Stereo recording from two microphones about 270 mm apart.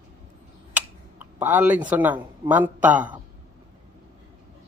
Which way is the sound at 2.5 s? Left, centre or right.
Centre.